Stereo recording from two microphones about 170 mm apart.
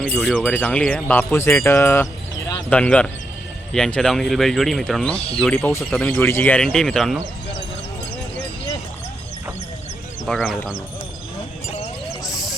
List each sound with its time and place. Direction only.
0.1 s speech: 5° left (ahead or behind)
10.2 s speech: 5° left (ahead or behind)